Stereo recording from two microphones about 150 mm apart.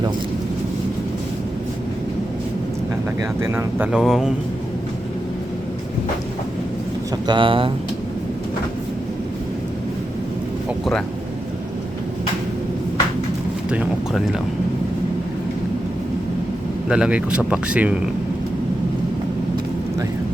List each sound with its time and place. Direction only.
3.4 s speech: 15° right (ahead or behind)
3.9 s speech: 5° right (ahead or behind)
7.3 s speech: 35° right (ahead or behind)
13.7 s speech: 5° right (ahead or behind)
16.9 s speech: 5° right (ahead or behind)